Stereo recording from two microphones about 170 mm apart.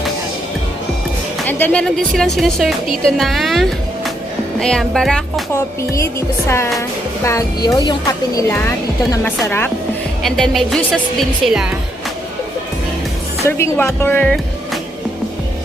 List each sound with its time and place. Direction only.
1.5 s speech: 10° left (ahead or behind)
5.5 s music: 15° left (ahead or behind)
7.3 s speech: 20° left (ahead or behind)
9.2 s music: 15° left (ahead or behind)
10.2 s speech: centre (ahead or behind)
13.4 s music: 15° left (ahead or behind)